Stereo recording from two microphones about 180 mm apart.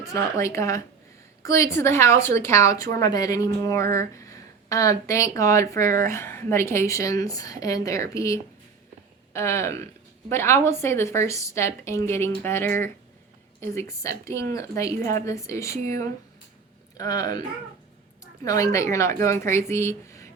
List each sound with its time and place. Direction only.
0.0 s a woman's voice: 15° left (ahead or behind)
17.0 s speech: 20° left (ahead or behind)
18.4 s a woman's voice: 15° left (ahead or behind)